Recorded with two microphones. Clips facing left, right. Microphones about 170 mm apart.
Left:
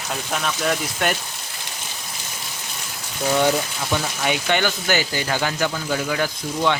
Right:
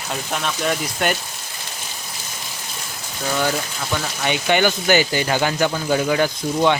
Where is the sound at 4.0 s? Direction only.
Centre (ahead or behind).